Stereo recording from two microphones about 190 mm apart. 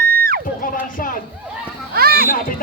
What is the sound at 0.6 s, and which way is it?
Speech, 45° left (ahead or behind).